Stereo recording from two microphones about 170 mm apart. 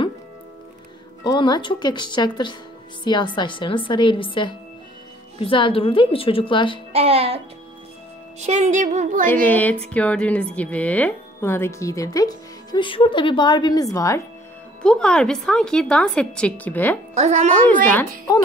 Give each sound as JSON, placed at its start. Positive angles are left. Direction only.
{"t": 1.2, "sound": "speech", "side_deg": 25}
{"t": 6.9, "sound": "music", "side_deg": -35}
{"t": 8.4, "sound": "speech", "side_deg": -40}
{"t": 9.2, "sound": "speech", "side_deg": 10}
{"t": 14.8, "sound": "a woman's voice", "side_deg": 5}
{"t": 17.1, "sound": "music", "side_deg": -40}